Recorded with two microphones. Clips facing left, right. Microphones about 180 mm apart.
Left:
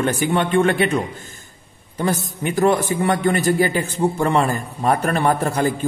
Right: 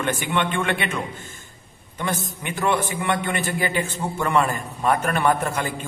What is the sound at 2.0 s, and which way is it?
A man's voice, 40° left (ahead or behind).